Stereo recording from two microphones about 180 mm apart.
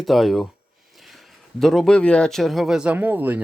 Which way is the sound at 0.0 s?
Centre (ahead or behind).